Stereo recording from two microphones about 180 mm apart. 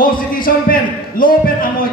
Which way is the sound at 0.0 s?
50° left (ahead or behind).